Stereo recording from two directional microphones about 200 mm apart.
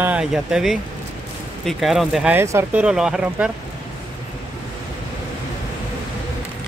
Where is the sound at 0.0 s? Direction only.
5° right (ahead or behind).